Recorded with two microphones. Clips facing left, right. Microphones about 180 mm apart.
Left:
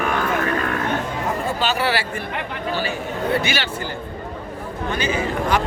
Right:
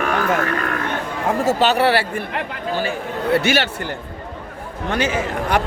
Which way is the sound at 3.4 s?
70° right (ahead or behind).